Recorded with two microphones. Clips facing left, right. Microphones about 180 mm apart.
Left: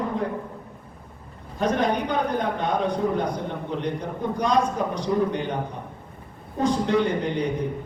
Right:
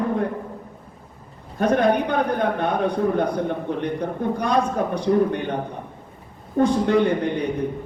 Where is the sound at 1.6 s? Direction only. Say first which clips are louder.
Right 4 dB; 55° right (ahead or behind).